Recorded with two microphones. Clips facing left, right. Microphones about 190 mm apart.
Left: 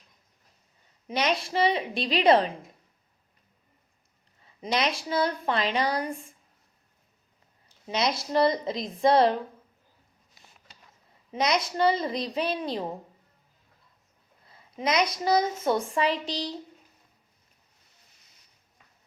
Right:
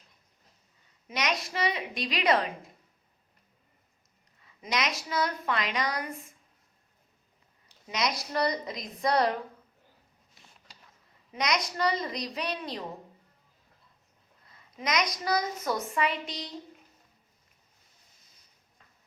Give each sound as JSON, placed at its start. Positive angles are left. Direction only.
{"t": 1.0, "sound": "a woman's voice", "side_deg": 30}
{"t": 4.6, "sound": "a woman's voice", "side_deg": 30}
{"t": 7.9, "sound": "a woman's voice", "side_deg": 30}
{"t": 11.3, "sound": "a woman's voice", "side_deg": 30}
{"t": 14.4, "sound": "a woman's voice", "side_deg": 30}